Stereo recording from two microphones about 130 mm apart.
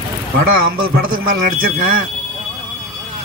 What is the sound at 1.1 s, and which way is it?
Speech, 90° right.